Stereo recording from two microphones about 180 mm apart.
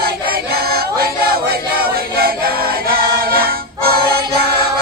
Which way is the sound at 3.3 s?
55° right (ahead or behind).